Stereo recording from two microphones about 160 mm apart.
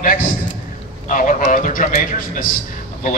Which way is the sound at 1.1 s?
55° left (ahead or behind).